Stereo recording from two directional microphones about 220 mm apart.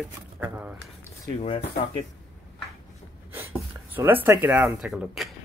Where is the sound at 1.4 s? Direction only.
25° left (ahead or behind).